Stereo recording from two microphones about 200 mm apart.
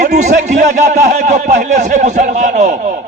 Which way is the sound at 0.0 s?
35° right (ahead or behind).